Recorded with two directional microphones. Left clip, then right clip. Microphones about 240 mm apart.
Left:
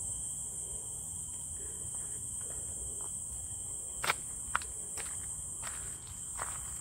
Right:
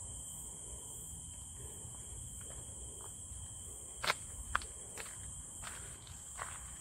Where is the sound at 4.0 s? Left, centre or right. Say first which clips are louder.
Left 2 dB; centre.